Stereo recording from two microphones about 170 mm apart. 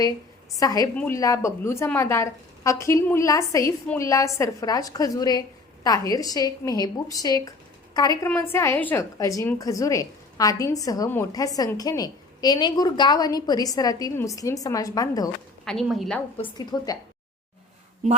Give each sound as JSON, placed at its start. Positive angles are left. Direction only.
{"t": 0.5, "sound": "a woman's voice", "side_deg": 20}
{"t": 15.6, "sound": "a woman's voice", "side_deg": 0}
{"t": 16.4, "sound": "a woman's voice", "side_deg": 25}